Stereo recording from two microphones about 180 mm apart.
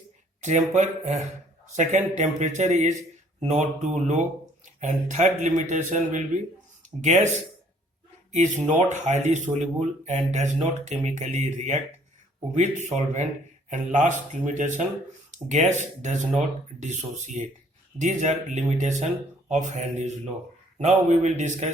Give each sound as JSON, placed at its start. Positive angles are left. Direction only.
{"t": 0.4, "sound": "speech", "side_deg": -40}
{"t": 8.3, "sound": "speech", "side_deg": -40}